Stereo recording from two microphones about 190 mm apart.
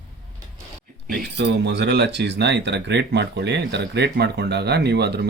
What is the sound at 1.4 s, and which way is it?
Speech, 65° right (ahead or behind).